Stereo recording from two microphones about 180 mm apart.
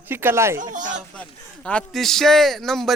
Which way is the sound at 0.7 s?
45° right (ahead or behind).